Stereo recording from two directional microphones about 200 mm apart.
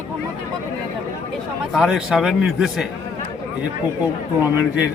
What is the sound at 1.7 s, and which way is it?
A man's voice, centre (ahead or behind).